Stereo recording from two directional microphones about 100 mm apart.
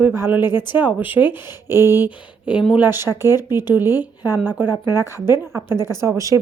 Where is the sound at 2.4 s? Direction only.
10° right (ahead or behind).